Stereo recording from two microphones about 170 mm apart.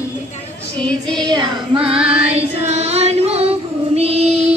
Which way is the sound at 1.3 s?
25° right (ahead or behind).